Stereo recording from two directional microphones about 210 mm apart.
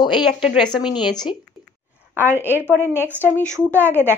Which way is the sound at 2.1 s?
10° right (ahead or behind).